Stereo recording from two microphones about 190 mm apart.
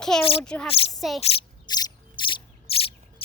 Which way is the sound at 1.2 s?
20° left (ahead or behind).